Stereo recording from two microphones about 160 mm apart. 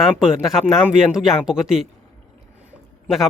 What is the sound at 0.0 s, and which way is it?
Speech, centre (ahead or behind).